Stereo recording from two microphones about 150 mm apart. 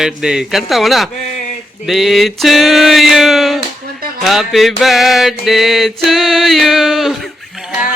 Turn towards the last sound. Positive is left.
turn(degrees=-5)  # may be behind; listen again after turning